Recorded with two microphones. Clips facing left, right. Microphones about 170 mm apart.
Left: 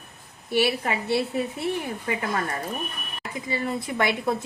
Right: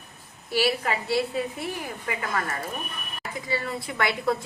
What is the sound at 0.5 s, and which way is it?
A woman's voice, 20° left (ahead or behind).